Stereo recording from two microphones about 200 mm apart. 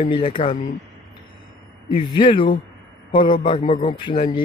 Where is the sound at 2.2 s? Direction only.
25° left (ahead or behind).